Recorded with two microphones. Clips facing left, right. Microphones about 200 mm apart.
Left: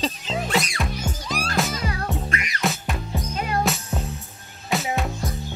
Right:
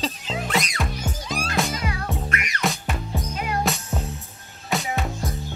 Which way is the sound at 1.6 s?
Centre (ahead or behind).